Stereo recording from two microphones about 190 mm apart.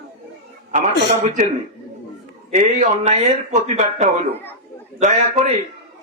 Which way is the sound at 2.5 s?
40° right (ahead or behind).